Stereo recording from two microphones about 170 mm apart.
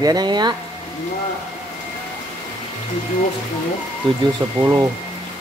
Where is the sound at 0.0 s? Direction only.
25° right (ahead or behind).